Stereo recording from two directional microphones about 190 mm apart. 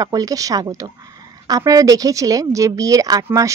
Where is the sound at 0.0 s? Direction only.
20° right (ahead or behind).